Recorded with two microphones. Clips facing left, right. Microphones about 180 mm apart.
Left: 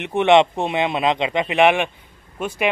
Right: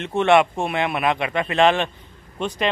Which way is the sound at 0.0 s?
15° left (ahead or behind).